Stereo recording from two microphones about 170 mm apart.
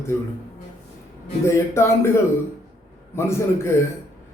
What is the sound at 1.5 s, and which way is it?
Speech, 15° left (ahead or behind).